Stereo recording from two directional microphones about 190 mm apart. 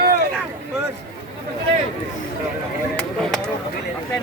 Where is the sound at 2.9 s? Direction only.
5° left (ahead or behind).